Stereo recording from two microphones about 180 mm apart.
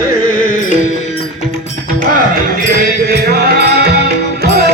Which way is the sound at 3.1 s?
60° right (ahead or behind).